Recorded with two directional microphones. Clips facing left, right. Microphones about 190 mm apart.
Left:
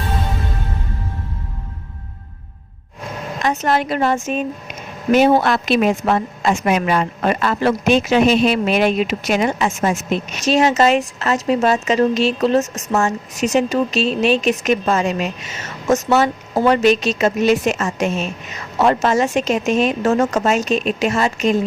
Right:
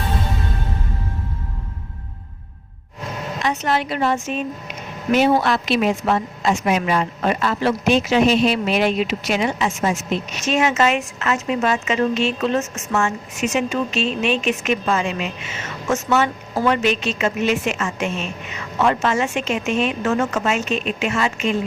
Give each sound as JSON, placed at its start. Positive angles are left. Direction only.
{"t": 3.4, "sound": "a woman's voice", "side_deg": 45}
{"t": 10.4, "sound": "a woman's voice", "side_deg": 35}